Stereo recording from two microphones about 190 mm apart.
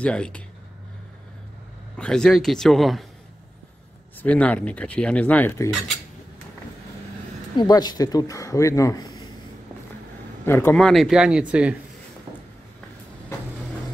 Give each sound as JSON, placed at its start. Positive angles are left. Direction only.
{"t": 0.0, "sound": "a man's voice", "side_deg": 5}
{"t": 2.0, "sound": "a man's voice", "side_deg": 5}
{"t": 4.2, "sound": "speech", "side_deg": 5}
{"t": 7.5, "sound": "speech", "side_deg": 20}
{"t": 10.4, "sound": "a man's voice", "side_deg": 10}